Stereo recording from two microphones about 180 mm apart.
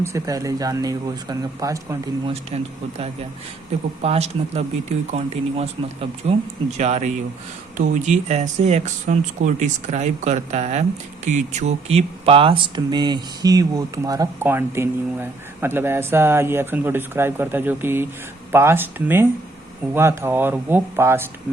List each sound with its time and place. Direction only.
0.0 s speech: 15° right (ahead or behind)
2.2 s speech: 35° right (ahead or behind)
4.0 s speech: 35° right (ahead or behind); by 21.2 s 15° right (ahead or behind)